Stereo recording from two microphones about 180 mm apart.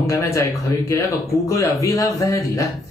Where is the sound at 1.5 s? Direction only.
15° left (ahead or behind).